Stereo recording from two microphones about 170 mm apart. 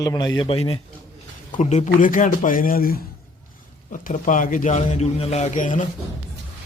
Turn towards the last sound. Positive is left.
turn(degrees=45)  # may be behind; listen again after turning